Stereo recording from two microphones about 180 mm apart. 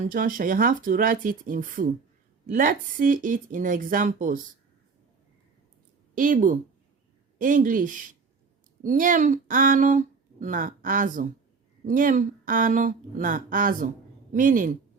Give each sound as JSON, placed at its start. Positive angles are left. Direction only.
{"t": 0.0, "sound": "speech", "side_deg": -50}
{"t": 6.1, "sound": "speech", "side_deg": -45}